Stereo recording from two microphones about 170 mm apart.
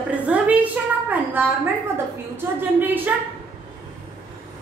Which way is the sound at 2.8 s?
10° right (ahead or behind).